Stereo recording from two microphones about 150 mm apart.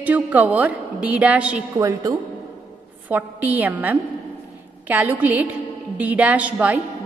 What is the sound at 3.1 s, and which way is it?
A woman's voice, 10° right (ahead or behind).